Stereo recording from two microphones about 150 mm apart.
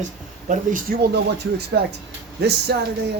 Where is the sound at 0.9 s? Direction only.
85° right.